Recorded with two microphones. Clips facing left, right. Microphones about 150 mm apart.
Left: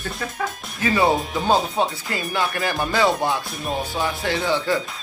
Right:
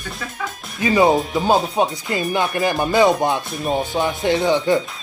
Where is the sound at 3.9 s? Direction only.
20° right (ahead or behind).